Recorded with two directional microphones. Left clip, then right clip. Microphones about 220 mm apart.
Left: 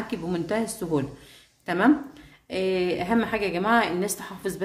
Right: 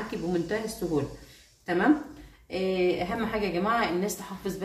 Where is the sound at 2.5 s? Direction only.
40° left (ahead or behind).